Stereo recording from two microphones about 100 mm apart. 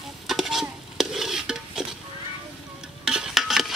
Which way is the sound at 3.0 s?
5° right (ahead or behind).